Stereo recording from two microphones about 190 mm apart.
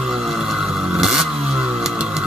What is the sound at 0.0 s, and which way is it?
Motorcycle, centre (ahead or behind).